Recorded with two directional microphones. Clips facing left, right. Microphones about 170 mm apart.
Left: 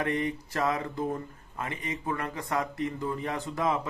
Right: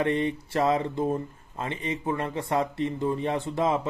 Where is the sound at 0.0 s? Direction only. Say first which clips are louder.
Right 4 dB; 25° right (ahead or behind).